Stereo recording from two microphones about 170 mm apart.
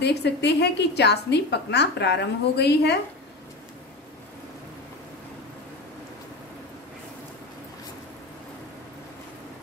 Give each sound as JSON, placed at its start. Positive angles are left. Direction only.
{"t": 0.0, "sound": "a woman's voice", "side_deg": 80}